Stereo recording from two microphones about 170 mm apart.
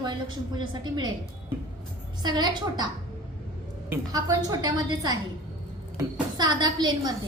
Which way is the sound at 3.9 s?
20° right (ahead or behind).